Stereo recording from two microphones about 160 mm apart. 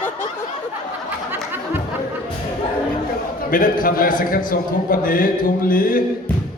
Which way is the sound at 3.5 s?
60° left (ahead or behind).